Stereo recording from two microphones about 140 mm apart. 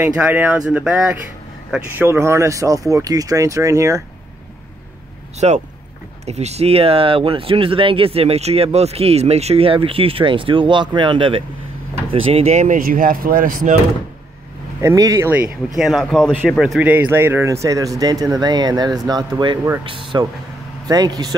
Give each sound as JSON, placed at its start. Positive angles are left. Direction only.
{"t": 0.1, "sound": "speech", "side_deg": -10}
{"t": 5.4, "sound": "speech", "side_deg": -50}
{"t": 12.6, "sound": "speech", "side_deg": -75}
{"t": 14.8, "sound": "speech", "side_deg": -25}
{"t": 15.3, "sound": "speech", "side_deg": -5}
{"t": 16.8, "sound": "speech", "side_deg": -10}